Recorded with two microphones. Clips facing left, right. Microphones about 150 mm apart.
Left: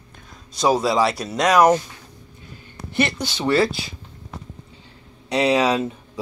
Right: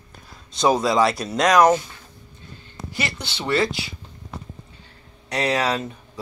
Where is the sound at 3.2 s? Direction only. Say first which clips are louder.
Left 1 dB; 25° left (ahead or behind).